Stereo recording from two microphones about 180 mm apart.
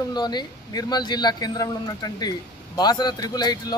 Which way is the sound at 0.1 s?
25° left (ahead or behind).